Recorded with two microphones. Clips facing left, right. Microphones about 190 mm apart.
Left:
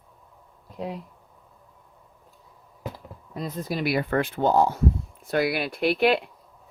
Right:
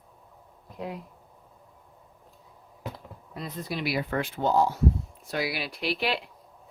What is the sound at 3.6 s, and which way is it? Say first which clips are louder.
Speech: left 4 dB; 45° left (ahead or behind).